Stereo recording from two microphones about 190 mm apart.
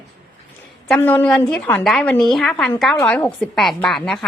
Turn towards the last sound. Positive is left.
turn(degrees=0)  # may be behind; listen again after turning